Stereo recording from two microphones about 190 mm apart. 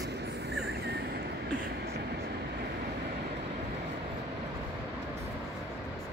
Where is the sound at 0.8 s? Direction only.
60° right (ahead or behind).